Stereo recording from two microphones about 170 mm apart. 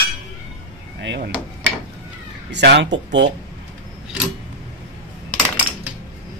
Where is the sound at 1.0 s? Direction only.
85° right.